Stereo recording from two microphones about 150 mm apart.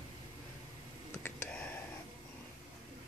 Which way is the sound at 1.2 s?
10° left (ahead or behind).